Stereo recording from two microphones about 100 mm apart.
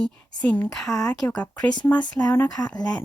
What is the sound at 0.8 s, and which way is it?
Speech, 30° left (ahead or behind).